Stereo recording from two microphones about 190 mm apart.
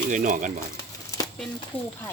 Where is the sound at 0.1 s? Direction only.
40° right (ahead or behind).